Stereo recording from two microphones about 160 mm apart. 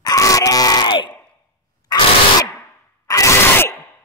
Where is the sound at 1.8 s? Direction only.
25° left (ahead or behind).